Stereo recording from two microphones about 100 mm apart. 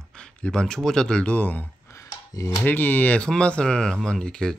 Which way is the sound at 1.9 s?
30° left (ahead or behind).